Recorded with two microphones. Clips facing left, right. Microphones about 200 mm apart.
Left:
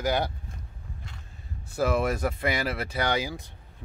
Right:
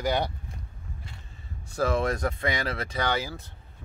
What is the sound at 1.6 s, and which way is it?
Speech, 5° left (ahead or behind).